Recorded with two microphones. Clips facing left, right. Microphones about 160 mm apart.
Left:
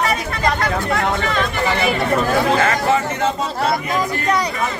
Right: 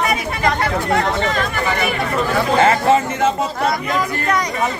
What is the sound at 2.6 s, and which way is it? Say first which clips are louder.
Speech: right 3 dB; 30° right (ahead or behind).